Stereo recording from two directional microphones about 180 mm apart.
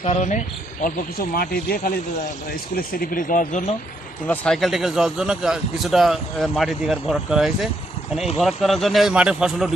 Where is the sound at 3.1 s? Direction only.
50° left (ahead or behind).